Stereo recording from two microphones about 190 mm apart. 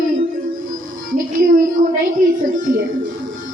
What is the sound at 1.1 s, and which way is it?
A woman's voice, 45° right (ahead or behind).